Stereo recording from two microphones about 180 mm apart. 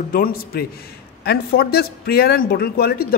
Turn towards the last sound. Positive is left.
turn(degrees=60)  # may be behind; listen again after turning